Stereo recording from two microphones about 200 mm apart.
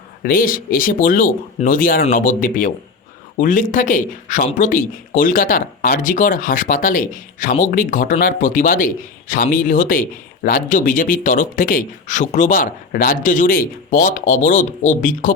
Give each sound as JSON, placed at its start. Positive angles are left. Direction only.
{"t": 0.2, "sound": "speech", "side_deg": 45}